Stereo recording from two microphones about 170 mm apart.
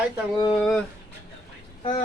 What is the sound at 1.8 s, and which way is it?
Speech, 30° left (ahead or behind).